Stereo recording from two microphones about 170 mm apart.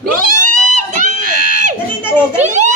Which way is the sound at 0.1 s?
50° right (ahead or behind).